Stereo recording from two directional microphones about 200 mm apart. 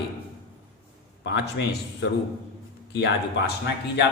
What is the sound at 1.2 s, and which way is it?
Speech, 60° left (ahead or behind).